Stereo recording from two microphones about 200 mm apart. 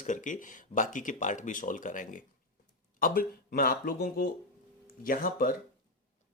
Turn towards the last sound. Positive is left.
turn(degrees=45)  # may be behind; listen again after turning